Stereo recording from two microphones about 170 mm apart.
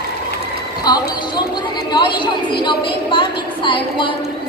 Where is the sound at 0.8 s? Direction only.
25° left (ahead or behind).